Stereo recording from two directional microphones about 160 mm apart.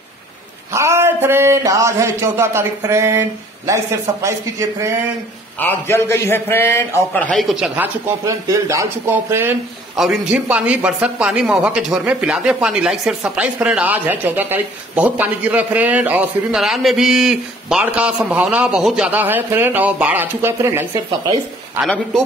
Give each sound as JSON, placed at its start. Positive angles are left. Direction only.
{"t": 0.7, "sound": "speech", "side_deg": -15}
{"t": 5.6, "sound": "a man's voice", "side_deg": 15}
{"t": 21.8, "sound": "speech", "side_deg": 5}